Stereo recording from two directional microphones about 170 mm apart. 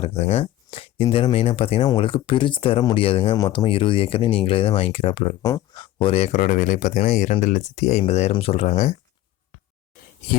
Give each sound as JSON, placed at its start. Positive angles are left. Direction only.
{"t": 0.0, "sound": "speech", "side_deg": 35}
{"t": 5.4, "sound": "speech", "side_deg": 20}
{"t": 6.4, "sound": "speech", "side_deg": 50}